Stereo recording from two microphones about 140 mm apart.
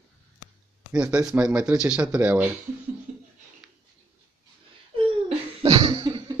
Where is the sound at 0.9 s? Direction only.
10° right (ahead or behind).